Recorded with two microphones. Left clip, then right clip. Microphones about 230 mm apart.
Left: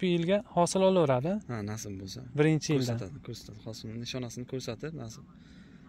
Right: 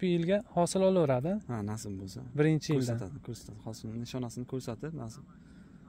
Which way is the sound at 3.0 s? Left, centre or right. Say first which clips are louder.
Left 1 dB; right.